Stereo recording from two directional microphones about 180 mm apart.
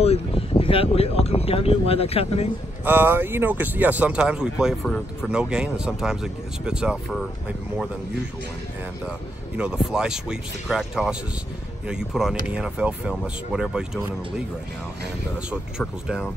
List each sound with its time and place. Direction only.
0.0 s speech: 35° left (ahead or behind)
2.8 s speech: 10° right (ahead or behind)
9.6 s speech: 5° right (ahead or behind)